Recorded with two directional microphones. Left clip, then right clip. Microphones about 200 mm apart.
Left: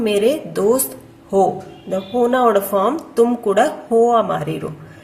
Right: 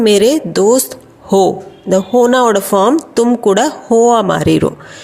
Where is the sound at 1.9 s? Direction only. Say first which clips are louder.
Right 7 dB; 40° right (ahead or behind).